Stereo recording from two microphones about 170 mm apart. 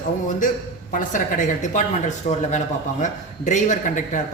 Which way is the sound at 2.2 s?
45° left (ahead or behind).